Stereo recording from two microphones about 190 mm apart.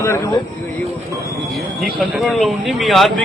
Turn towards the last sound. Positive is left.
turn(degrees=0)  # may be behind; listen again after turning